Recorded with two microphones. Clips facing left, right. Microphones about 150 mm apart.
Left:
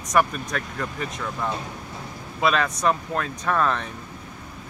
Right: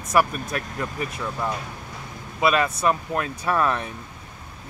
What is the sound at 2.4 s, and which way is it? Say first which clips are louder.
Speech: right 1 dB; 5° right (ahead or behind).